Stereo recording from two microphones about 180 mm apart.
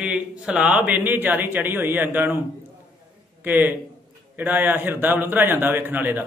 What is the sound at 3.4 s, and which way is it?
A man's voice, 10° right (ahead or behind).